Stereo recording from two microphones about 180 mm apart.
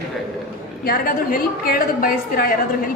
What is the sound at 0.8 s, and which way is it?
A woman's voice, 55° left (ahead or behind).